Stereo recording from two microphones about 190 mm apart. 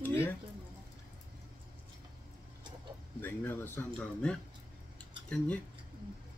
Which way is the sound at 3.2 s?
10° left (ahead or behind).